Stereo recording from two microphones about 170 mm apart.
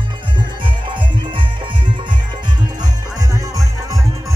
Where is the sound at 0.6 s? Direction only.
30° right (ahead or behind).